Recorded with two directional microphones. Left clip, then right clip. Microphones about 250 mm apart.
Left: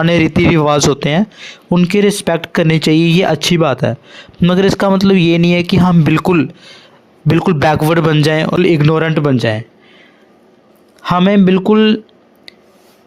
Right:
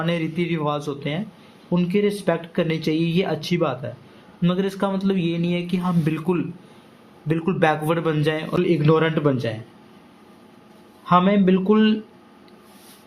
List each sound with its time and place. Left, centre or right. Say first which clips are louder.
0.0 s a man's voice: left 13 dB; left
11.0 s a man's voice: left 6 dB; left